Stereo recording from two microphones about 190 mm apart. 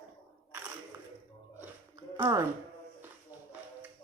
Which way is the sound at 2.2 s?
15° right (ahead or behind).